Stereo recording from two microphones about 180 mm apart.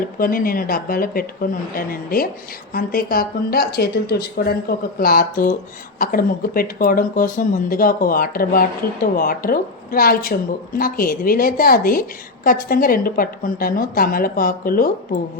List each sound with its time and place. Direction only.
0.2 s speech: 55° left (ahead or behind)